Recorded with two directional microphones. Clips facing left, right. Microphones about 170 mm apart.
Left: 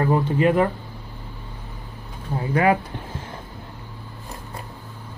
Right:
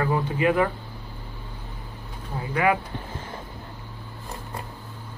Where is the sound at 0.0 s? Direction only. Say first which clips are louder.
Left 4 dB; 40° left (ahead or behind).